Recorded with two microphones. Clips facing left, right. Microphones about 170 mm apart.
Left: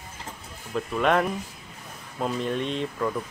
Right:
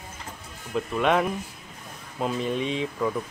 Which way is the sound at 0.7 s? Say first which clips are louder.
Even; centre (ahead or behind).